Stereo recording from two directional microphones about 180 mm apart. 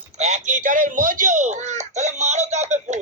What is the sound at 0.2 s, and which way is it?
Speech, 40° right (ahead or behind).